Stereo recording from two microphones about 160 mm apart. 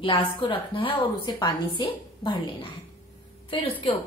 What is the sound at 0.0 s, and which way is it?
A woman's voice, 35° left (ahead or behind).